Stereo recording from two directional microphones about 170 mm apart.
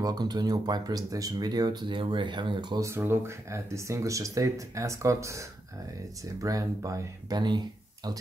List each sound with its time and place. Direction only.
0.0 s speech: 25° right (ahead or behind)
2.9 s speech: 15° right (ahead or behind)